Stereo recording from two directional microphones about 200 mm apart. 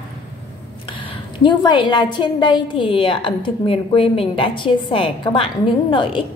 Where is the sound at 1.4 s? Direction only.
25° left (ahead or behind).